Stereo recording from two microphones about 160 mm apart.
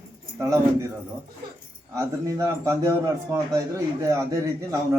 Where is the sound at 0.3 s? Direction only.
20° right (ahead or behind).